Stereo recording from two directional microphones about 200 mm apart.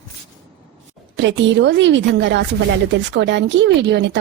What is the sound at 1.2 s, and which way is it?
Speech, 65° right (ahead or behind).